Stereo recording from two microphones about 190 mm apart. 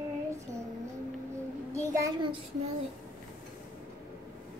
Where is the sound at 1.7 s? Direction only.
20° right (ahead or behind).